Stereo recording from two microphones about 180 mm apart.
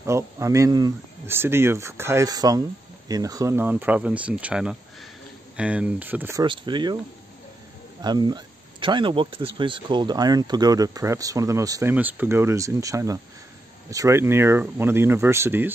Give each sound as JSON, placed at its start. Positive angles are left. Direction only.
{"t": 0.0, "sound": "speech", "side_deg": -15}
{"t": 6.4, "sound": "speech", "side_deg": -25}
{"t": 8.0, "sound": "speech", "side_deg": -25}